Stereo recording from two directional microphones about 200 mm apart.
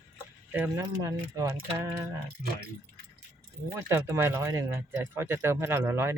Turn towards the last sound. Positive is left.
turn(degrees=-10)  # may be behind; listen again after turning